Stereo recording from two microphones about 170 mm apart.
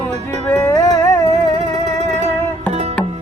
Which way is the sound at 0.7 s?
25° left (ahead or behind).